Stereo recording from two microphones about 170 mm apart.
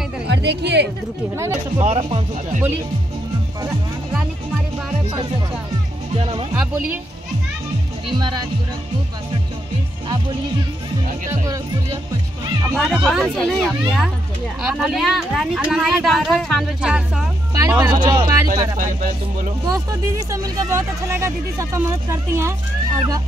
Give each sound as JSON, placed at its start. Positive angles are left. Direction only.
{"t": 0.3, "sound": "speech", "side_deg": -85}
{"t": 1.4, "sound": "speech", "side_deg": -15}
{"t": 1.9, "sound": "speech", "side_deg": -35}
{"t": 8.1, "sound": "speech", "side_deg": -25}
{"t": 11.2, "sound": "speech", "side_deg": -20}
{"t": 12.7, "sound": "speech", "side_deg": 5}
{"t": 17.6, "sound": "speech", "side_deg": -20}
{"t": 19.6, "sound": "speech", "side_deg": -20}
{"t": 22.9, "sound": "speech", "side_deg": -20}